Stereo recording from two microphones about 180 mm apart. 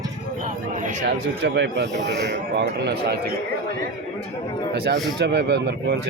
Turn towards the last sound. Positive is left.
turn(degrees=-70)  # may be behind; listen again after turning